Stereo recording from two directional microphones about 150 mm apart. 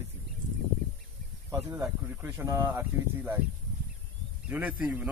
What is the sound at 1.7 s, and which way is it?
Speech, 15° right (ahead or behind).